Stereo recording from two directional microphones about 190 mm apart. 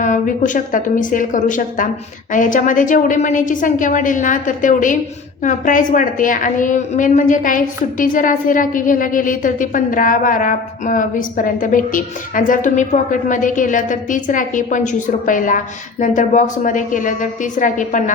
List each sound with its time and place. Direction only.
0.0 s a woman's voice: 40° left (ahead or behind)